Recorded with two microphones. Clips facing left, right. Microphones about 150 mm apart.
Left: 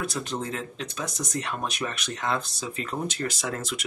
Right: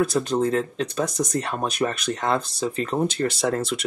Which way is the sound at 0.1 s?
35° right (ahead or behind).